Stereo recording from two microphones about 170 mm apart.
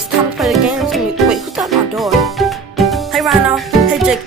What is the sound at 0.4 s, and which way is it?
Music, centre (ahead or behind).